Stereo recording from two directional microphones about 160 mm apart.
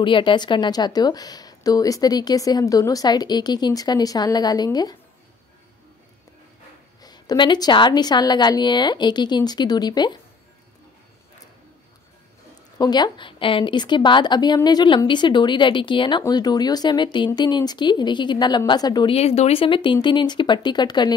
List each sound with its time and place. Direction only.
0.0 s a woman's voice: 30° left (ahead or behind)
7.0 s a woman's voice: 25° left (ahead or behind)
12.7 s a woman's voice: 25° left (ahead or behind)
19.1 s a woman's voice: 40° left (ahead or behind)